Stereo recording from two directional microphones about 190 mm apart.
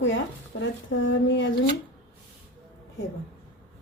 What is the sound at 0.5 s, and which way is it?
Speech, 65° left (ahead or behind).